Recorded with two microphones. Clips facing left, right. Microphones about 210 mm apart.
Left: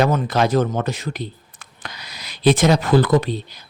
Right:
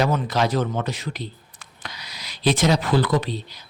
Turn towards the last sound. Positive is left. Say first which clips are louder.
# left 5 dB
turn(degrees=50)  # may be behind; listen again after turning